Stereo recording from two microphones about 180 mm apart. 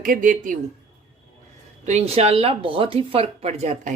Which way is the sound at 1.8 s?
35° right (ahead or behind).